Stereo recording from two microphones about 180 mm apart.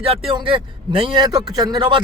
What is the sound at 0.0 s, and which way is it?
A man's voice, 30° right (ahead or behind).